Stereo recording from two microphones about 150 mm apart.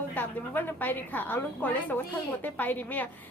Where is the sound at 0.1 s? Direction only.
10° left (ahead or behind).